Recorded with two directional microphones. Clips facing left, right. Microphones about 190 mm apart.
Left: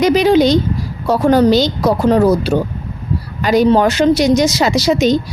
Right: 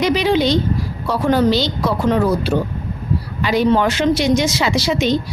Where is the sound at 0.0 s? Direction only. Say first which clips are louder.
Left 5 dB; 45° left (ahead or behind).